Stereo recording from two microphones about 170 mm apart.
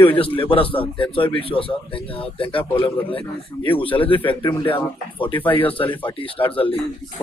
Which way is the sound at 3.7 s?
30° left (ahead or behind).